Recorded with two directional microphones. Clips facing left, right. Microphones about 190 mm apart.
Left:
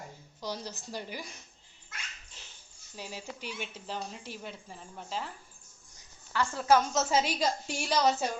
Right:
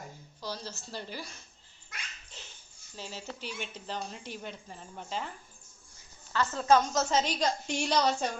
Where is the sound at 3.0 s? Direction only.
15° left (ahead or behind).